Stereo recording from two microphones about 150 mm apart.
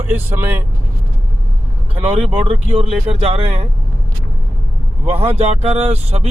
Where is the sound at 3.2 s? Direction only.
40° right (ahead or behind).